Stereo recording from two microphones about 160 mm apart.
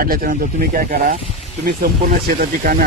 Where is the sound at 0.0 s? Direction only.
65° right (ahead or behind).